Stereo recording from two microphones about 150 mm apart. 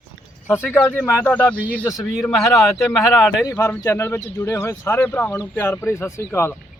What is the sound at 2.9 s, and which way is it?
Speech, centre (ahead or behind).